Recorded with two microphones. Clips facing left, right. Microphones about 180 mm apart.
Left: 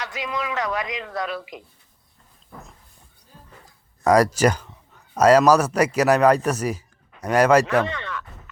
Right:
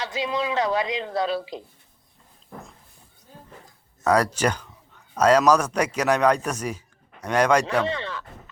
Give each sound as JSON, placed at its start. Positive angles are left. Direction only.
{"t": 0.0, "sound": "a woman's voice", "side_deg": -30}
{"t": 4.0, "sound": "a man's voice", "side_deg": 10}
{"t": 7.9, "sound": "a sound", "side_deg": -30}